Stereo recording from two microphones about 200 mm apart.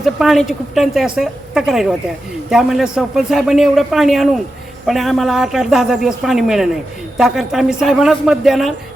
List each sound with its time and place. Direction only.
0.0 s a woman's voice: centre (ahead or behind)